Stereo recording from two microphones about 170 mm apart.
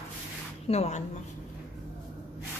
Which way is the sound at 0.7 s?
40° left (ahead or behind).